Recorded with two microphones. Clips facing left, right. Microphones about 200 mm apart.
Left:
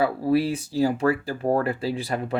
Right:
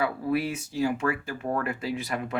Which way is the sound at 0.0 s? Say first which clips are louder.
Left 5 dB; 30° left (ahead or behind).